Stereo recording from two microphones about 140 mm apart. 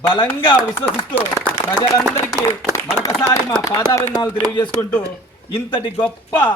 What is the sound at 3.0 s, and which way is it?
A man's voice, 20° left (ahead or behind).